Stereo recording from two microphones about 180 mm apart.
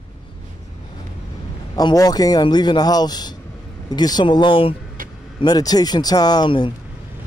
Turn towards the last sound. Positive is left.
turn(degrees=25)  # may be behind; listen again after turning